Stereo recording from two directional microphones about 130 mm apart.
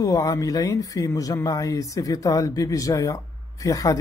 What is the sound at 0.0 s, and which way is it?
Speech, 25° left (ahead or behind).